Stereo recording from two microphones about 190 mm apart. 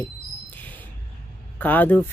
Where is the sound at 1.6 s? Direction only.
10° left (ahead or behind).